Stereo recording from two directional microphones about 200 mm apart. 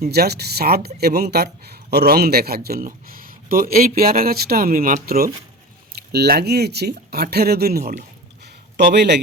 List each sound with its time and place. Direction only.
0.0 s a man's voice: 50° right (ahead or behind)